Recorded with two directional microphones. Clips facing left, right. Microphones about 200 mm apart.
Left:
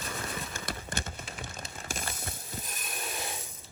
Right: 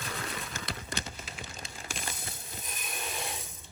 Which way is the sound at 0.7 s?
50° left (ahead or behind).